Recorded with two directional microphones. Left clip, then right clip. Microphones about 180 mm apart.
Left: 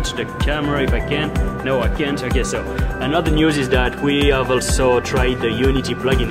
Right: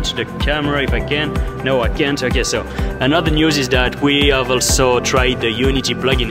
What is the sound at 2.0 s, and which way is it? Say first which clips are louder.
Speech: right 4 dB; 55° right (ahead or behind).